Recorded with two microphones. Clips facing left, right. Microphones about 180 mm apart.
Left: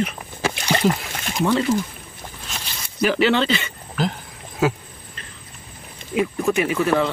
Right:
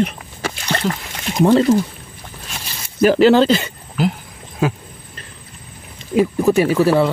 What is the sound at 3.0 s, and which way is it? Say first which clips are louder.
Speech: right 7 dB; 40° right (ahead or behind).